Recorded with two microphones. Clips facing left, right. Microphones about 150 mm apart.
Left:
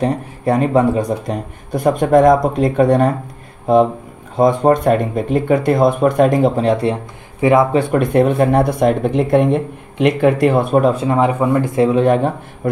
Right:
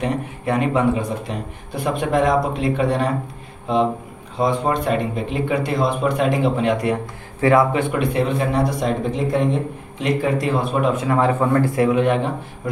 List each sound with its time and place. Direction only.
0.0 s a man's voice: 40° left (ahead or behind)
4.4 s a man's voice: 45° left (ahead or behind); by 7.0 s 30° left (ahead or behind)
7.3 s speech: 20° left (ahead or behind)
7.7 s speech: 45° left (ahead or behind)
10.9 s speech: 30° left (ahead or behind)
11.1 s speech: 15° left (ahead or behind); by 12.2 s 35° left (ahead or behind)